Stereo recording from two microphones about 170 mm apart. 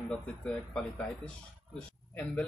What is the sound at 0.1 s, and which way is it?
Speech, 5° left (ahead or behind).